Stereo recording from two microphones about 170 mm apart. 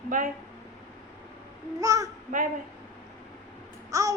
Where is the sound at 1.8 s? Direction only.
20° right (ahead or behind).